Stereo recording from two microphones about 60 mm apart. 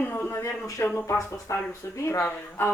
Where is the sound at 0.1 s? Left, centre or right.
Left.